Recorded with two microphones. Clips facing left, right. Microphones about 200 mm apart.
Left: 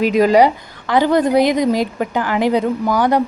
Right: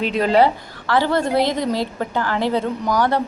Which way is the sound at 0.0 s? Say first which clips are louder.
Left 4 dB; 10° left (ahead or behind).